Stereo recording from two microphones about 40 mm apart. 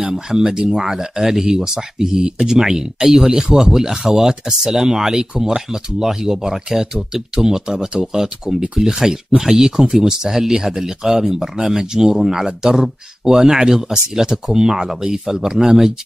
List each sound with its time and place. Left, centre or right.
0.0 s speech: centre